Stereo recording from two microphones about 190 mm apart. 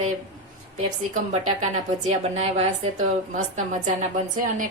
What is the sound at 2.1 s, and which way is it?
Speech, 35° right (ahead or behind).